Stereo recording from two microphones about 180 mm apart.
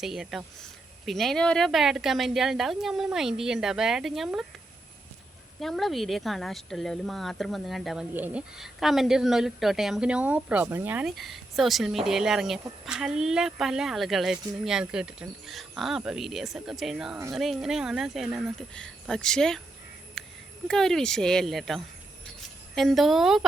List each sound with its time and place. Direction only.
0.0 s speech: centre (ahead or behind)
5.5 s speech: centre (ahead or behind)
20.2 s a sound: centre (ahead or behind)
20.7 s speech: centre (ahead or behind)